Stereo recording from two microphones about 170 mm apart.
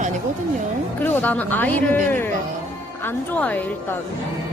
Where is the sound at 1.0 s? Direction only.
10° left (ahead or behind).